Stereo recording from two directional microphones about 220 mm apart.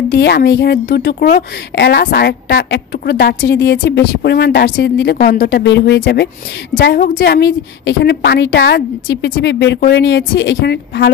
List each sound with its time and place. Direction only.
0.1 s a woman's voice: 50° left (ahead or behind)